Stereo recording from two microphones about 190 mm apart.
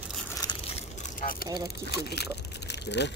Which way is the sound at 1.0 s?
45° left (ahead or behind).